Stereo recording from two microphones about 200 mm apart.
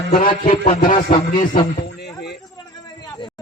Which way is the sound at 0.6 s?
45° left (ahead or behind).